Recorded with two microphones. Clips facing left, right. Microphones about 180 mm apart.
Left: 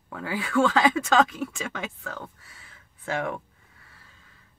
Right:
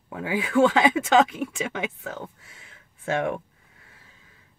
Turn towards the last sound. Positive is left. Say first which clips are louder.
# right 4 dB
turn(degrees=-20)  # may be behind; listen again after turning